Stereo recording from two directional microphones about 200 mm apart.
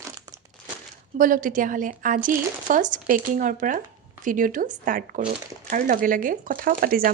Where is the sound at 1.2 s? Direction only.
40° right (ahead or behind).